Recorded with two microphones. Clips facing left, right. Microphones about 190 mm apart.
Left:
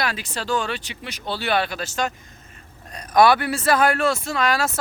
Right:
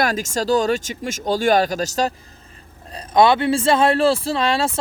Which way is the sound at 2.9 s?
25° right (ahead or behind).